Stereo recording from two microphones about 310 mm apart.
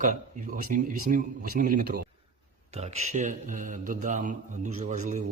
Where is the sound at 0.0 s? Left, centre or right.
Right.